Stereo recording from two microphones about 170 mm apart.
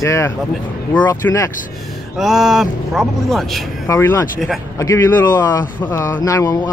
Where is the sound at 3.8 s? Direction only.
15° left (ahead or behind).